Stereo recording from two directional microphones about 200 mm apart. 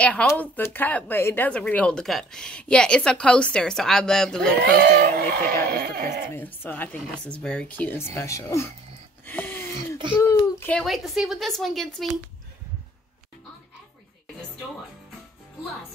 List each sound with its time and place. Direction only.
0.0 s speech: 5° left (ahead or behind)
4.6 s speech: 55° right (ahead or behind)
6.3 s speech: 10° left (ahead or behind)
9.2 s a sound: 10° left (ahead or behind)
10.1 s speech: 10° left (ahead or behind)